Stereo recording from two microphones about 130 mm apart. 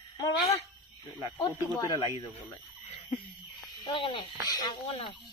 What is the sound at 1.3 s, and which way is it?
Speech, 35° left (ahead or behind).